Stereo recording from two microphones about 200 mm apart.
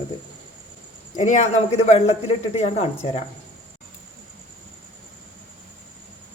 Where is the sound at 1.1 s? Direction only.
35° left (ahead or behind).